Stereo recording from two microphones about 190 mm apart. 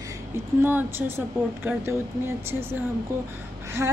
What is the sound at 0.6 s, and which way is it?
A woman's voice, 10° right (ahead or behind).